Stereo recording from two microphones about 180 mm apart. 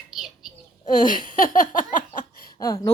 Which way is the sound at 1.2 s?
45° left (ahead or behind).